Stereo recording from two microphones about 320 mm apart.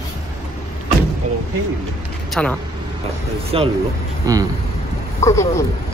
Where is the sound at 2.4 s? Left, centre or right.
Centre.